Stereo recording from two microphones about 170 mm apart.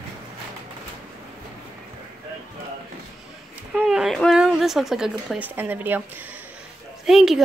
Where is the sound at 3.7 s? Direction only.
5° right (ahead or behind).